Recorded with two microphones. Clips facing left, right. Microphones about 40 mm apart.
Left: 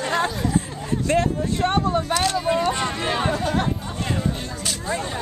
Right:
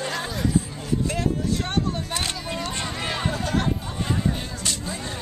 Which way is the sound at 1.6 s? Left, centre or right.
Centre.